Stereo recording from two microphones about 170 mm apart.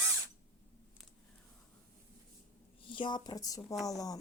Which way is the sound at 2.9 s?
30° left (ahead or behind).